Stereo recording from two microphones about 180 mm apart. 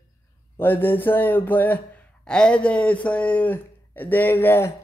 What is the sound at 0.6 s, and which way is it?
Speech, 10° left (ahead or behind).